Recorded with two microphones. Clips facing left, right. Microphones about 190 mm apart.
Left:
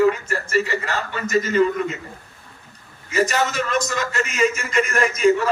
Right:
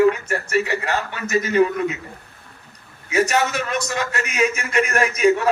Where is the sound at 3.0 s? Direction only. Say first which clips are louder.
Right 1 dB; 65° right (ahead or behind).